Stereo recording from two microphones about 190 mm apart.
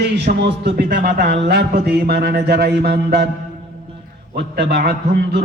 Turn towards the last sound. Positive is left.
turn(degrees=-55)  # may be behind; listen again after turning